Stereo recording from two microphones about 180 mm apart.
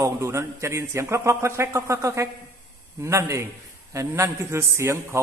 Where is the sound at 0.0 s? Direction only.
15° right (ahead or behind).